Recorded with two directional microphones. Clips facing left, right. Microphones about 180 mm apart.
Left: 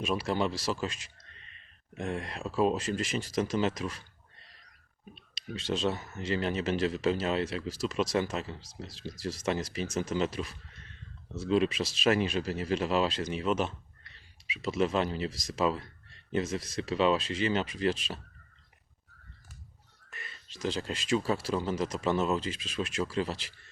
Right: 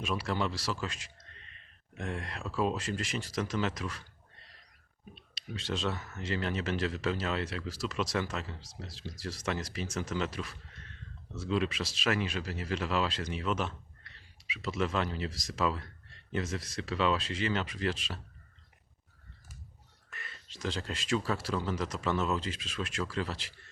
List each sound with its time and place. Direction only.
0.0 s speech: 25° left (ahead or behind)
5.3 s speech: 20° left (ahead or behind)
20.1 s speech: 20° left (ahead or behind)